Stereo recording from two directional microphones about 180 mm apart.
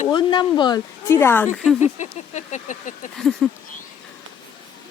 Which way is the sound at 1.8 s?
40° left (ahead or behind).